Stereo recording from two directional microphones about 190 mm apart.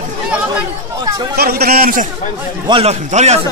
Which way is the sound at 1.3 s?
55° right (ahead or behind).